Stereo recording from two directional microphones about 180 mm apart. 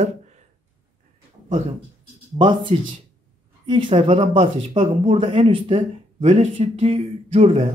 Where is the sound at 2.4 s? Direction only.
25° right (ahead or behind).